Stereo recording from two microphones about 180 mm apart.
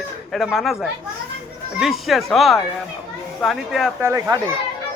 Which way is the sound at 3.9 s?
10° right (ahead or behind).